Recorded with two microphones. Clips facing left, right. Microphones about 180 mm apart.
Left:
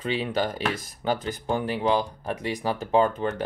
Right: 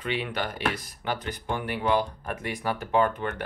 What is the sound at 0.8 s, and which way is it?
Speech, 45° left (ahead or behind).